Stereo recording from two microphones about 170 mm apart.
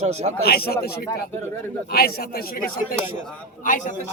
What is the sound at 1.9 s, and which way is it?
Speech, 65° left (ahead or behind).